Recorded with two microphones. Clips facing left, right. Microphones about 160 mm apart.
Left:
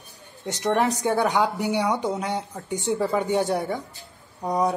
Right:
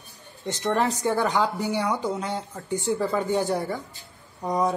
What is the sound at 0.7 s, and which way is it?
Speech, 15° left (ahead or behind).